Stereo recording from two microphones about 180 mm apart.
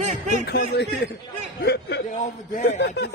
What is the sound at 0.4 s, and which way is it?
A man's voice, 65° left (ahead or behind).